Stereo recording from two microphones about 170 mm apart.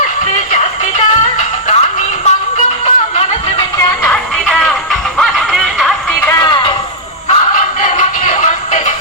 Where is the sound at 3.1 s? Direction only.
35° left (ahead or behind).